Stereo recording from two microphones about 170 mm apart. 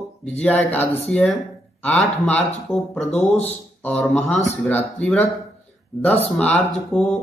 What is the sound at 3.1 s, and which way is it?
Speech, 40° left (ahead or behind).